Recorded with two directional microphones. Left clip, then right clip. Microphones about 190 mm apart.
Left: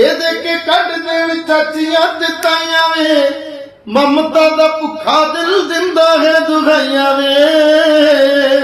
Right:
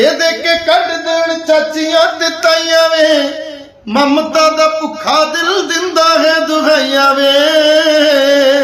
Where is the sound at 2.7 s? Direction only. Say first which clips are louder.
Right 4 dB; 20° right (ahead or behind).